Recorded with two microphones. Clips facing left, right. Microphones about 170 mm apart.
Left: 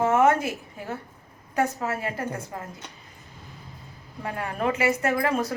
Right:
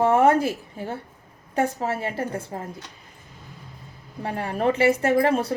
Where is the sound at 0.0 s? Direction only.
35° right (ahead or behind).